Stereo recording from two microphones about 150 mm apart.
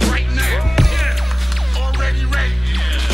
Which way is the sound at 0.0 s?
Centre (ahead or behind).